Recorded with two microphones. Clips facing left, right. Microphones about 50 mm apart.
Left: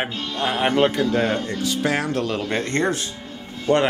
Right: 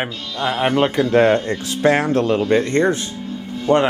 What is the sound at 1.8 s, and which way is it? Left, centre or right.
Speech, right.